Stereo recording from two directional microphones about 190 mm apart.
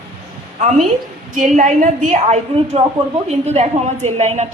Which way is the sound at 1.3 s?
40° right (ahead or behind).